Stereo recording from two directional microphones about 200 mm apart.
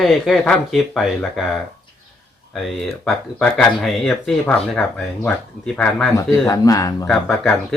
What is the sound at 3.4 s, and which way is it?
Speech, 5° left (ahead or behind).